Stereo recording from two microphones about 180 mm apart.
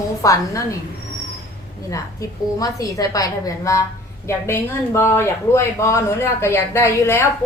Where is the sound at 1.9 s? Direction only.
20° left (ahead or behind).